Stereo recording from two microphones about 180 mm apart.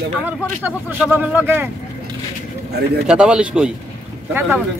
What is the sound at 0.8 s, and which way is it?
Speech, 10° right (ahead or behind).